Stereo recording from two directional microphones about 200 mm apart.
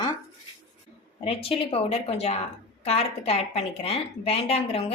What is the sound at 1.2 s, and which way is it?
A woman's voice, 30° left (ahead or behind).